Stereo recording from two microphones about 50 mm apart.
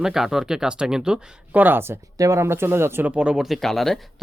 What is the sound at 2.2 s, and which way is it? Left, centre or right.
Speech, right.